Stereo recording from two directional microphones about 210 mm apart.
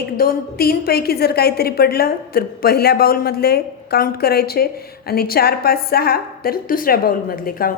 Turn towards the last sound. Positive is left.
turn(degrees=45)  # may be behind; listen again after turning